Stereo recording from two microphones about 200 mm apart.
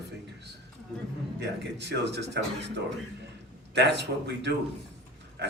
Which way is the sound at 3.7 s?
60° right (ahead or behind).